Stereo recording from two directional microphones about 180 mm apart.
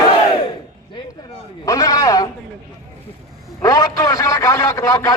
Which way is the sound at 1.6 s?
20° left (ahead or behind).